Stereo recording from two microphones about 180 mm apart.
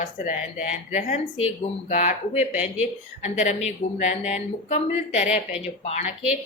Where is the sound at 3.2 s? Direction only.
40° left (ahead or behind).